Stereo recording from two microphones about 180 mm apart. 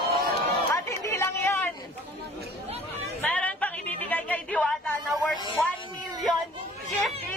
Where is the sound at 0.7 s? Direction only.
15° left (ahead or behind).